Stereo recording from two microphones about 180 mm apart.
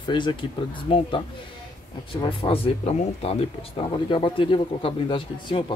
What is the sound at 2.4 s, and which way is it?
Speech, 30° left (ahead or behind).